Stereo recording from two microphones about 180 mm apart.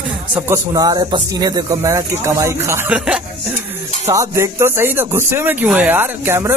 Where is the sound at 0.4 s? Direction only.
20° right (ahead or behind).